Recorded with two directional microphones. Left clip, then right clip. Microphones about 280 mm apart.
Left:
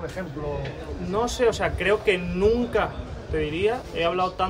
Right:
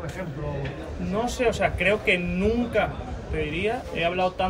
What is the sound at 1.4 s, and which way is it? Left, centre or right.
Speech, centre.